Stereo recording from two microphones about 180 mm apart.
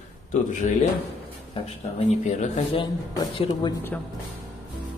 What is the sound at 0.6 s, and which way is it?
Speech, 45° left (ahead or behind).